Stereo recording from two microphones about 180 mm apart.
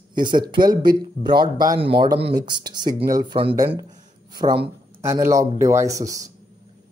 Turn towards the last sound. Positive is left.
turn(degrees=-20)  # may be behind; listen again after turning